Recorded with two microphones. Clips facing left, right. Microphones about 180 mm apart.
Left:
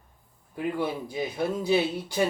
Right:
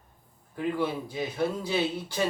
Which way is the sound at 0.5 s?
15° left (ahead or behind).